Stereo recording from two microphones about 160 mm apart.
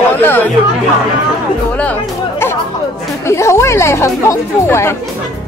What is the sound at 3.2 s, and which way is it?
Speech, 15° left (ahead or behind).